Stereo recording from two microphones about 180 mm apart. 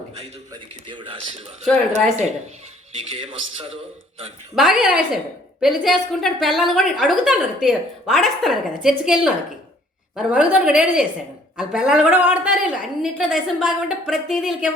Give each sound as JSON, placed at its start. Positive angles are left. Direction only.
{"t": 0.9, "sound": "a man's voice", "side_deg": -25}
{"t": 3.1, "sound": "a man's voice", "side_deg": -30}
{"t": 4.5, "sound": "a woman's voice", "side_deg": 0}